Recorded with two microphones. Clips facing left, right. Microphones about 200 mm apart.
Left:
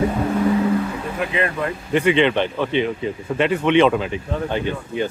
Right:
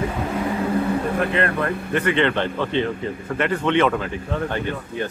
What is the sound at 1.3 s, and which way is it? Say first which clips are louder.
Speech: right 1 dB; 60° right (ahead or behind).